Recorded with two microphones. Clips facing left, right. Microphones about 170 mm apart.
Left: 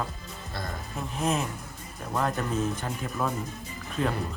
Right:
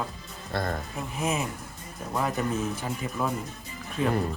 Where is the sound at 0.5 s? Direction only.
60° right (ahead or behind).